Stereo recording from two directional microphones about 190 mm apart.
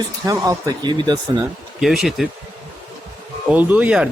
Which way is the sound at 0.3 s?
20° right (ahead or behind).